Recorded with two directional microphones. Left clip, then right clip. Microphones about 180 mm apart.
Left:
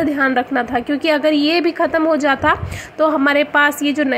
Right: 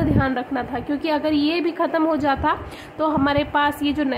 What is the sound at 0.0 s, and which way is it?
A woman's voice, 15° left (ahead or behind).